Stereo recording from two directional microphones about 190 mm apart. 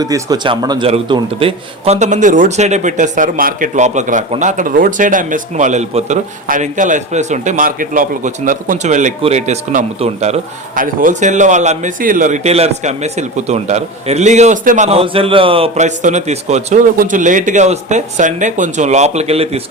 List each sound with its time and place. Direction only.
0.0 s a man's voice: 20° right (ahead or behind); by 14.8 s 45° right (ahead or behind)
14.8 s a man's voice: 30° right (ahead or behind)